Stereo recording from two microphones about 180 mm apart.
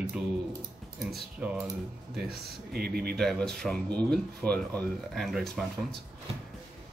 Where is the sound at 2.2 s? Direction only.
60° right (ahead or behind).